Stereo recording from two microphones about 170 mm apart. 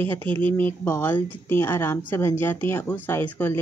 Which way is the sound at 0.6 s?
15° left (ahead or behind).